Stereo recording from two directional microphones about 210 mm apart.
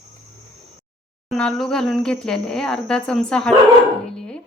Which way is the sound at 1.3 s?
Centre (ahead or behind).